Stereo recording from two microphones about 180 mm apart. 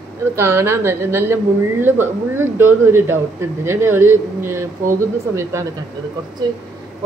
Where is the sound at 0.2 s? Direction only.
15° right (ahead or behind).